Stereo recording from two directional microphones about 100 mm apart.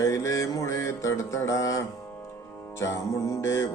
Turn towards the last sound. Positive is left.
turn(degrees=30)  # may be behind; listen again after turning